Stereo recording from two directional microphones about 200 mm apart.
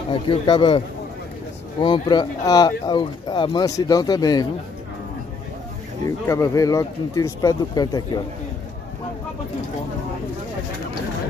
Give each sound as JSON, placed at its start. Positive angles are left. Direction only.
{"t": 0.1, "sound": "speech", "side_deg": 25}
{"t": 6.0, "sound": "speech", "side_deg": 15}